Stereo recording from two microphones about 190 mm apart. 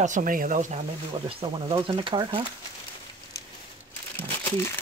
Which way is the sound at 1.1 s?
25° right (ahead or behind).